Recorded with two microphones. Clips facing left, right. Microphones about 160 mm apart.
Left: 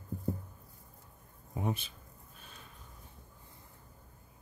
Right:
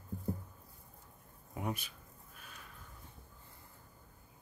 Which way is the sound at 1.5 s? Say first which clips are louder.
Left 3 dB; 25° left (ahead or behind).